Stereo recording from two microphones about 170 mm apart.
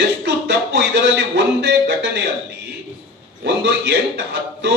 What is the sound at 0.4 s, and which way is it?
Music, 90° right.